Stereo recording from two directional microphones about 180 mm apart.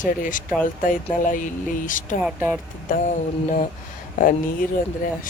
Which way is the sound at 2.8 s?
45° left (ahead or behind).